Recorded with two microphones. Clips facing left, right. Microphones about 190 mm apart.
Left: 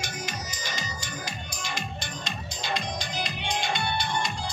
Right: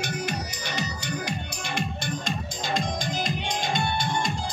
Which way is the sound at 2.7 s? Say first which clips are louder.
Right 5 dB; 45° right (ahead or behind).